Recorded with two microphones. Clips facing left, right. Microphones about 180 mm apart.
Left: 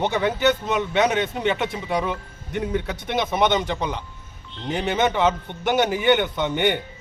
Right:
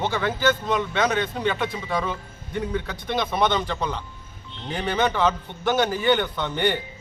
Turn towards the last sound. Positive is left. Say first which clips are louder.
# left 3 dB
turn(degrees=20)  # may be behind; listen again after turning